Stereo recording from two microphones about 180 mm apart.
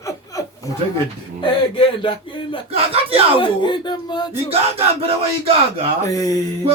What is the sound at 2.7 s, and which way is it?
Speech, 30° right (ahead or behind).